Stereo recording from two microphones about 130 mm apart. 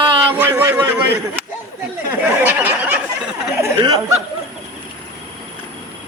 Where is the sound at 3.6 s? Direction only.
30° right (ahead or behind).